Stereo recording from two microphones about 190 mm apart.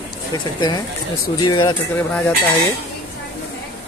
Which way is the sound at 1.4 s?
25° left (ahead or behind).